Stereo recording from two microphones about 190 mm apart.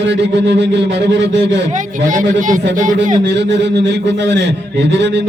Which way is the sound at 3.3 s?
65° right (ahead or behind).